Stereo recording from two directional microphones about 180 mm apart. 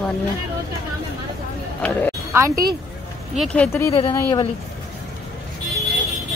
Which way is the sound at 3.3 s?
10° left (ahead or behind).